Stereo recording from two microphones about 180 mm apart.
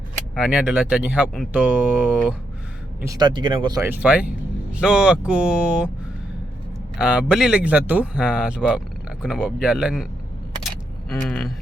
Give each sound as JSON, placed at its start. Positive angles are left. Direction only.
{"t": 0.3, "sound": "speech", "side_deg": -5}
{"t": 3.0, "sound": "speech", "side_deg": -20}
{"t": 3.8, "sound": "speech", "side_deg": -10}
{"t": 7.0, "sound": "speech", "side_deg": -5}
{"t": 11.1, "sound": "speech", "side_deg": 0}